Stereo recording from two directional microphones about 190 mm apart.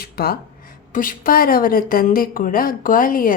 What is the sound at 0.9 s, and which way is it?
Speech, 45° left (ahead or behind).